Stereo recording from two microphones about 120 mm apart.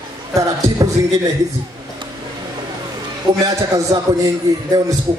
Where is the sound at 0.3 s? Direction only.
30° right (ahead or behind).